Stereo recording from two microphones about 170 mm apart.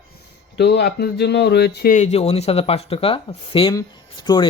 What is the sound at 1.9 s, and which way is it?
Speech, 40° left (ahead or behind).